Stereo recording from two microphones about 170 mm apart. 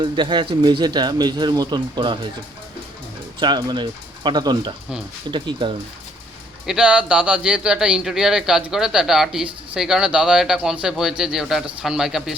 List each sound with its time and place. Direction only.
0.0 s speech: 25° right (ahead or behind)
3.4 s speech: 25° right (ahead or behind)
6.7 s speech: 5° right (ahead or behind)